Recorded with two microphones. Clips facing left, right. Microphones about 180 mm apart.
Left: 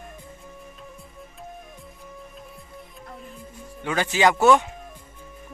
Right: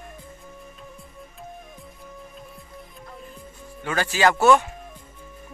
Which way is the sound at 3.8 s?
20° left (ahead or behind).